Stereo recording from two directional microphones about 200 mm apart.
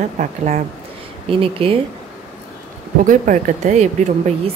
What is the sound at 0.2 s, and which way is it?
A woman's voice, 35° right (ahead or behind).